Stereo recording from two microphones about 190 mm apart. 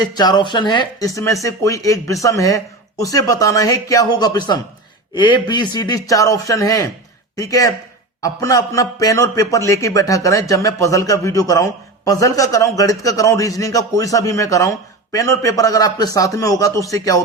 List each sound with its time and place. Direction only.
0.0 s a man's voice: 20° left (ahead or behind)